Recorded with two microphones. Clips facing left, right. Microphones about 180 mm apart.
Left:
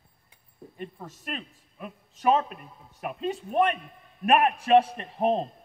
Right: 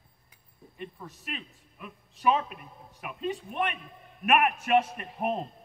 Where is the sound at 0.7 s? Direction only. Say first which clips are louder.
Left 2 dB; 40° left (ahead or behind).